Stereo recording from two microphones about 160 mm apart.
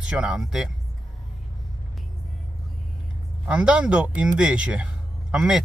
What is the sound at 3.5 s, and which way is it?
Speech, 5° right (ahead or behind).